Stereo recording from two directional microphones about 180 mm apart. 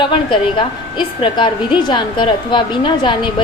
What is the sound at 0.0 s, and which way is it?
A woman's voice, 25° left (ahead or behind).